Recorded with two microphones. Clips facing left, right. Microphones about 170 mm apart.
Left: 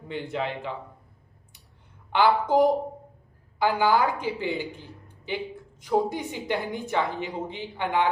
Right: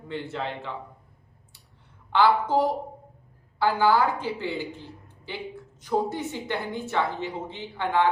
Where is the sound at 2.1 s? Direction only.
15° left (ahead or behind).